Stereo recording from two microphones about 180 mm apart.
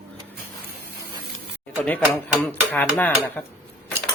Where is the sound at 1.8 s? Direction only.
10° left (ahead or behind).